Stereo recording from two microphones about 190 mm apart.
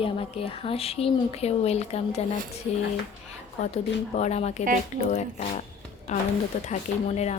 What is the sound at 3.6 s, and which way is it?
Speech, 35° left (ahead or behind).